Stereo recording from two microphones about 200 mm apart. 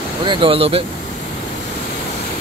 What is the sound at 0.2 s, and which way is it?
Speech, 25° right (ahead or behind).